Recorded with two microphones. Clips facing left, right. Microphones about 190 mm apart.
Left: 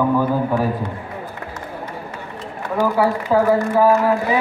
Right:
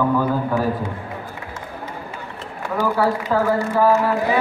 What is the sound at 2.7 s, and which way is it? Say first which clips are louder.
A man's voice: left 2 dB; 15° left (ahead or behind).